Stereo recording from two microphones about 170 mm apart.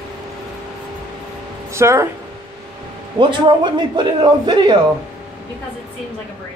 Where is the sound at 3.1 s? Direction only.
25° right (ahead or behind).